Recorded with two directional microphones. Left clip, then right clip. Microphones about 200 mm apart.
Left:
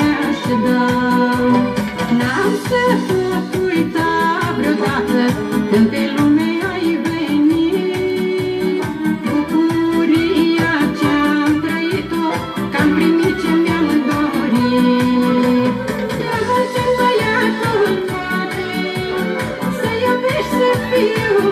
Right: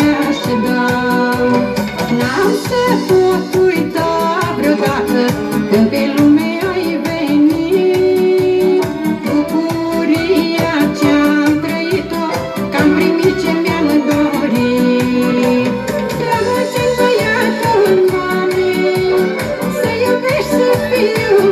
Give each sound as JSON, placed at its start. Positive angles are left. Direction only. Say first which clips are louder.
{"t": 0.7, "sound": "music", "louder": "right 1 dB", "side_deg": -45}
{"t": 5.1, "sound": "music", "louder": "right 2 dB", "side_deg": -40}
{"t": 11.0, "sound": "music", "louder": "right 3 dB", "side_deg": -40}
{"t": 12.7, "sound": "music", "louder": "right 2 dB", "side_deg": -40}
{"t": 15.1, "sound": "music", "louder": "right 2 dB", "side_deg": -40}